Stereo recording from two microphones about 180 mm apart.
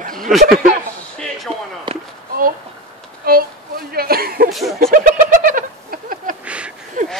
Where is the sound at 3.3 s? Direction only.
55° right (ahead or behind).